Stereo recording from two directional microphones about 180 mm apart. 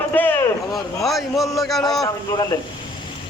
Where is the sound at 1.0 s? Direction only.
Centre (ahead or behind).